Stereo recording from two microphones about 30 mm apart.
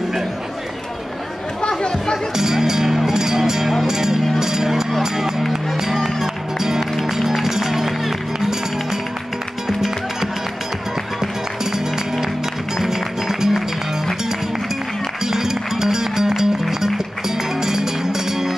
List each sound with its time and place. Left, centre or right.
1.7 s chatter: left
2.3 s music: centre
12.7 s music: centre
15.2 s music: centre
17.6 s music: centre